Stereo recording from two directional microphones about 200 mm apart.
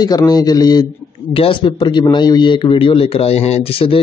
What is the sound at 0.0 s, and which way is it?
A man's voice, 20° left (ahead or behind).